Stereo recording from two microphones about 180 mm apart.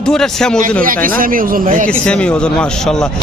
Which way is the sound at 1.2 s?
50° right (ahead or behind).